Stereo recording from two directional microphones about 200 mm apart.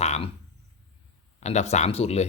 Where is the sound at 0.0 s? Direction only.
35° left (ahead or behind).